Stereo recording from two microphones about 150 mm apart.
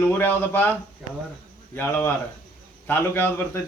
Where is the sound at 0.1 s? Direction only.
10° left (ahead or behind).